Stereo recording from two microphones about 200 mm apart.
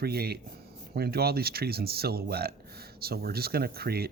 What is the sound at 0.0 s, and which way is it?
Speech, 50° right (ahead or behind).